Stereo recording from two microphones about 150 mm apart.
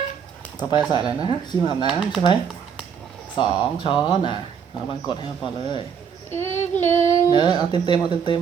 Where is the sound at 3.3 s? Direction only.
30° left (ahead or behind).